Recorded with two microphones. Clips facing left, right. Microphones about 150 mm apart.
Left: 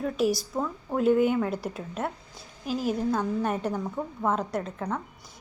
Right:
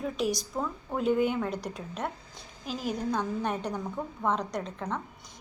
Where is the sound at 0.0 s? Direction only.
5° left (ahead or behind).